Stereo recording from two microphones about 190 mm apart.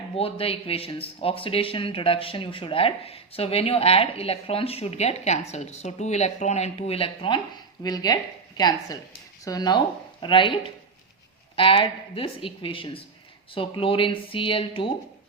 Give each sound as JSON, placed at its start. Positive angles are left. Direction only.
{"t": 0.2, "sound": "speech", "side_deg": 30}
{"t": 11.5, "sound": "speech", "side_deg": 25}